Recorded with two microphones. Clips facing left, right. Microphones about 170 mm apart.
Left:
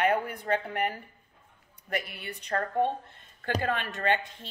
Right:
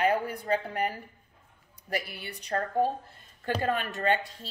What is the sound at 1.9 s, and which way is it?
A woman's voice, 35° right (ahead or behind).